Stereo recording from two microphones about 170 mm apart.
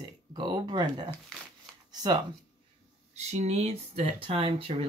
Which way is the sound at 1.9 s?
25° right (ahead or behind).